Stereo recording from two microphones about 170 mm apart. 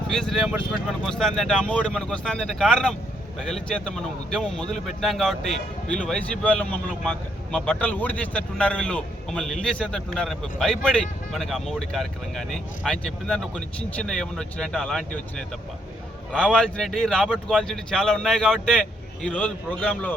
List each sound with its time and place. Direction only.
0.1 s speech: 5° left (ahead or behind)